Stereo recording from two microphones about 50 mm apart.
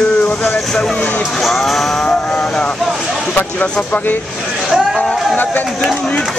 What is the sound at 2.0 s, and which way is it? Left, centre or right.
Vehicle, left.